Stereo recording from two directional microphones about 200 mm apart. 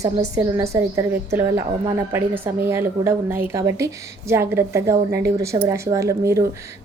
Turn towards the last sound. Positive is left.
turn(degrees=-15)  # may be behind; listen again after turning